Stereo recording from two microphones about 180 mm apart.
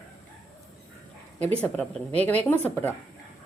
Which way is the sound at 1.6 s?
5° left (ahead or behind).